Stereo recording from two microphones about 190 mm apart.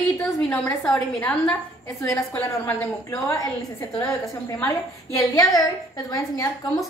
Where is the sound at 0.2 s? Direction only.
5° left (ahead or behind).